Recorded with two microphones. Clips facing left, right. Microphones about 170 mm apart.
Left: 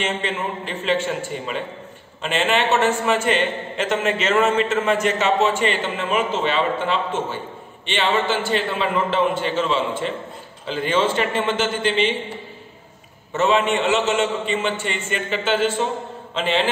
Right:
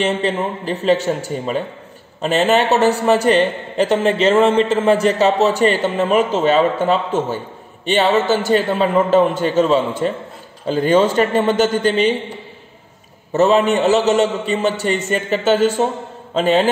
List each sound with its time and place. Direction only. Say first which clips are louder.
0.0 s a man's voice: right 6 dB; 35° right (ahead or behind)
13.3 s a man's voice: right 5 dB; 40° right (ahead or behind)